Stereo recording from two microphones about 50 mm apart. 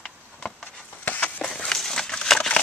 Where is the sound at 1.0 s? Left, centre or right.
Left.